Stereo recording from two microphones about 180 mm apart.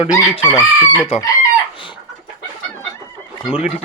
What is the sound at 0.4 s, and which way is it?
Chicken, 15° left (ahead or behind).